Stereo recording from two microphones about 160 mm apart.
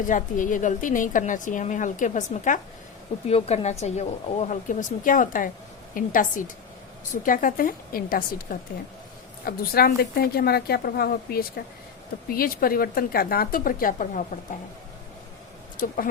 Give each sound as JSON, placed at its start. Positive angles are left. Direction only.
{"t": 0.1, "sound": "a woman's voice", "side_deg": 55}
{"t": 3.2, "sound": "a woman's voice", "side_deg": 40}